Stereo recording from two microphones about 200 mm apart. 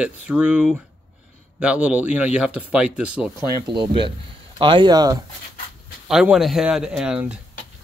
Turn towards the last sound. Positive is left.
turn(degrees=-5)  # may be behind; listen again after turning